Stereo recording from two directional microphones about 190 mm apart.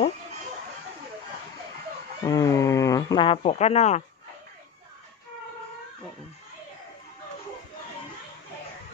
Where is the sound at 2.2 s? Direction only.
15° left (ahead or behind); by 4.0 s 35° left (ahead or behind).